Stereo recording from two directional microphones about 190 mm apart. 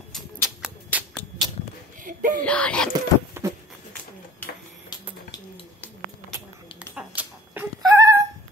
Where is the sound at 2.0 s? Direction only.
45° right (ahead or behind).